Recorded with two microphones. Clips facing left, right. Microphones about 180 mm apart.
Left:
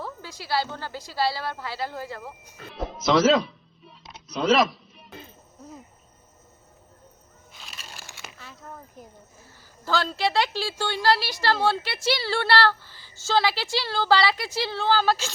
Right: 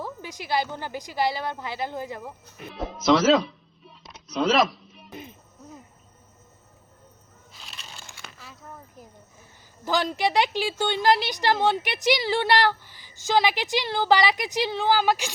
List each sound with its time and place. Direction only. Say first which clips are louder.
0.0 s a woman's voice: right 2 dB; 15° right (ahead or behind)
2.7 s music: right 1 dB; centre (ahead or behind)
7.8 s crumpling: left 1 dB; 5° left (ahead or behind)
8.2 s a sound: left 1 dB; centre (ahead or behind)
9.8 s a woman's voice: right 1 dB; 15° right (ahead or behind)